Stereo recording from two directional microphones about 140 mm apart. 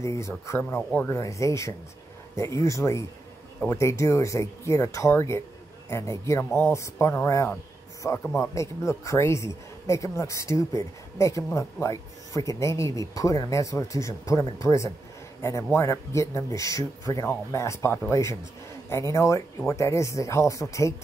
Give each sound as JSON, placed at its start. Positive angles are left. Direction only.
{"t": 0.0, "sound": "speech", "side_deg": 20}